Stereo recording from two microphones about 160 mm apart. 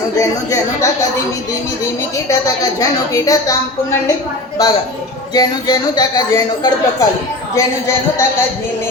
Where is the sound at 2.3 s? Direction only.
20° left (ahead or behind).